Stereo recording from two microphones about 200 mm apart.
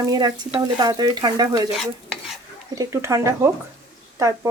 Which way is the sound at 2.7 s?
15° right (ahead or behind).